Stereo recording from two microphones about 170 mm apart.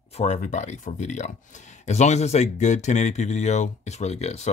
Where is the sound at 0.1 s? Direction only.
40° left (ahead or behind).